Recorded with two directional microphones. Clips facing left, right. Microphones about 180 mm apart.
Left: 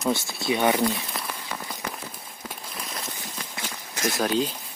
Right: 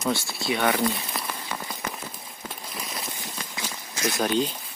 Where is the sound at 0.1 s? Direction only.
20° left (ahead or behind).